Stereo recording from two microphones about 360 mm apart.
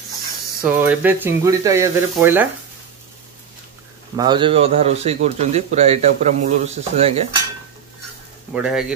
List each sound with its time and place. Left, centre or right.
0.7 s speech: centre
4.2 s speech: centre
8.5 s speech: centre